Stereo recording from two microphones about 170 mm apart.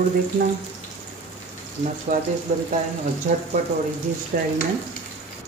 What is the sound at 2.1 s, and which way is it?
Stir, 50° right (ahead or behind).